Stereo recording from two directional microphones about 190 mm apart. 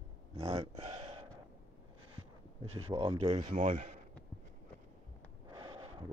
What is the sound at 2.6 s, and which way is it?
Speech, 30° right (ahead or behind).